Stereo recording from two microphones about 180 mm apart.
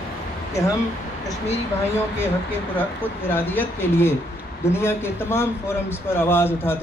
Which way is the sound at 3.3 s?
10° left (ahead or behind).